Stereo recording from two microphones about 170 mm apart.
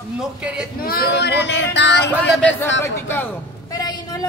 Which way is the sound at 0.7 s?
65° left (ahead or behind).